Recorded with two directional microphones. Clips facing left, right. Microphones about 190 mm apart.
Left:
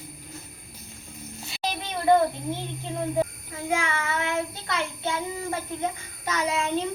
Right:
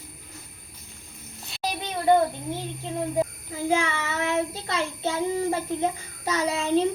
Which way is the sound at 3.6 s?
25° right (ahead or behind).